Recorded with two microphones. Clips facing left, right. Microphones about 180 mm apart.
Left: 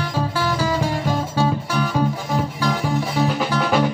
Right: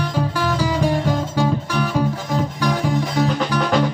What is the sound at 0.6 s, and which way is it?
Music, 15° right (ahead or behind).